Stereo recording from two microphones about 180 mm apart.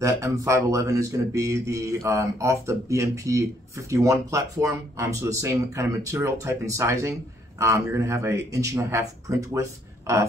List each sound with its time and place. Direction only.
0.0 s speech: 15° right (ahead or behind)